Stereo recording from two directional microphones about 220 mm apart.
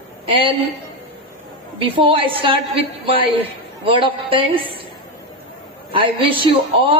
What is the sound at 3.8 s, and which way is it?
Speech, 25° right (ahead or behind).